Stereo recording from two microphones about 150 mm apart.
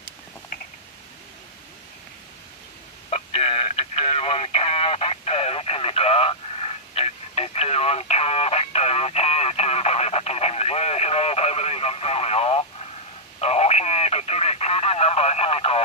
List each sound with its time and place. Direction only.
3.1 s telephone: 40° left (ahead or behind)